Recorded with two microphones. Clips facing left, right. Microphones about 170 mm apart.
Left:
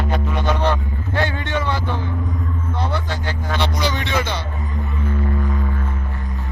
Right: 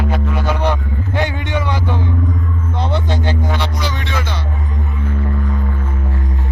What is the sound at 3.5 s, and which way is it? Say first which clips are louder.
Music: even; 5° right (ahead or behind).